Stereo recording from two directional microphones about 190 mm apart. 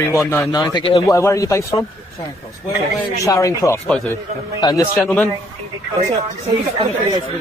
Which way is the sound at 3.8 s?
5° left (ahead or behind).